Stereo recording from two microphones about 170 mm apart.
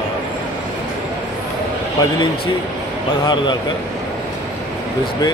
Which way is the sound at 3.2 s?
25° left (ahead or behind).